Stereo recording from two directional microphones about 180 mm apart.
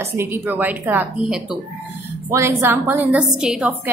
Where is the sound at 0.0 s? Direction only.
15° right (ahead or behind).